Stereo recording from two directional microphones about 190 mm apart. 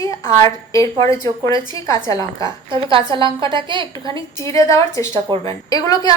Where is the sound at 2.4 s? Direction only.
25° right (ahead or behind).